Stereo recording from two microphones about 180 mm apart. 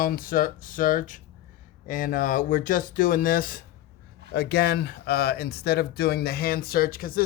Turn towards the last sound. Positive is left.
turn(degrees=55)  # may be behind; listen again after turning